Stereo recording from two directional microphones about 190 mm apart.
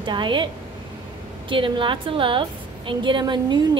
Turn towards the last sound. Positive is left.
turn(degrees=-25)  # may be behind; listen again after turning